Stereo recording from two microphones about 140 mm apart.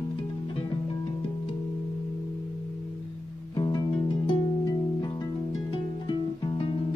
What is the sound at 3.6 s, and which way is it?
Music, 30° left (ahead or behind).